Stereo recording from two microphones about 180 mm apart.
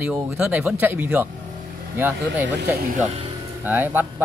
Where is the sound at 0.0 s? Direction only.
10° right (ahead or behind).